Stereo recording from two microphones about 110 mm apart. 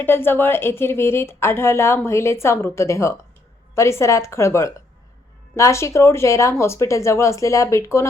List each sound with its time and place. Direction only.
0.0 s speech: 20° left (ahead or behind)